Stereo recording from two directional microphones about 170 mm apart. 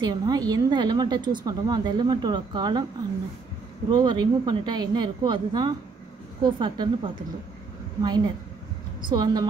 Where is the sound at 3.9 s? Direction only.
25° right (ahead or behind).